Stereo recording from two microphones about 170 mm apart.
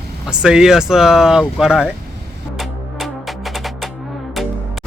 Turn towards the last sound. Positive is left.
turn(degrees=0)  # may be behind; listen again after turning